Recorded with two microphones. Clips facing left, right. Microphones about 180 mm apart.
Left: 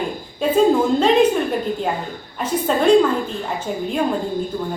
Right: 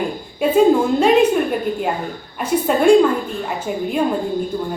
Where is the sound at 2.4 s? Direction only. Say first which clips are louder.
Right 2 dB; 10° right (ahead or behind).